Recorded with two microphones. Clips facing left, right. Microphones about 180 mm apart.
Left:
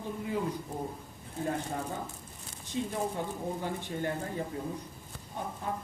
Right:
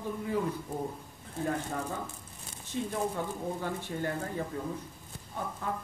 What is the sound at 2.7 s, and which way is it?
Speech, 20° left (ahead or behind).